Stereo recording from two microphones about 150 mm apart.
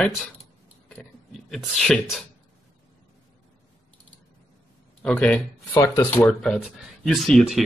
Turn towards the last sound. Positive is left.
turn(degrees=0)  # may be behind; listen again after turning